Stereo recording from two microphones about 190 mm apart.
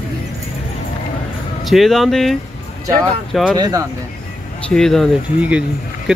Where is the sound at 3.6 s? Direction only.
20° right (ahead or behind).